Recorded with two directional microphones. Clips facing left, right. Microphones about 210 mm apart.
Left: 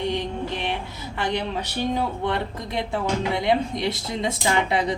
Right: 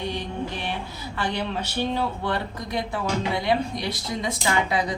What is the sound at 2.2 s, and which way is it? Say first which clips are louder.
Speech: left 2 dB; 25° left (ahead or behind).